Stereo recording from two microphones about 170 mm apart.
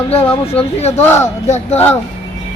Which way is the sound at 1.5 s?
40° left (ahead or behind).